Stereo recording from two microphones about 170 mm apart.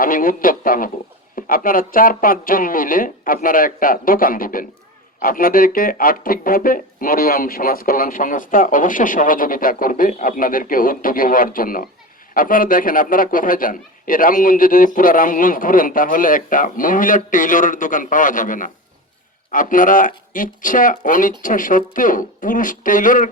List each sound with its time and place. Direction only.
0.0 s a man's voice: 55° left (ahead or behind)